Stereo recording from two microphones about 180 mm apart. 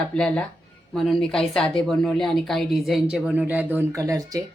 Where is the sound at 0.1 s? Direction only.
5° left (ahead or behind).